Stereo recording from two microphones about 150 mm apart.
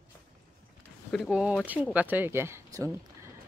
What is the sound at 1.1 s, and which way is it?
Speech, 5° right (ahead or behind).